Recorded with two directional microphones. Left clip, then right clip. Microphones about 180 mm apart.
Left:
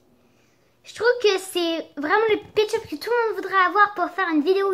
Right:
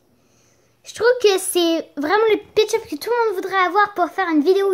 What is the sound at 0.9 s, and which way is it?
A woman's voice, 30° right (ahead or behind).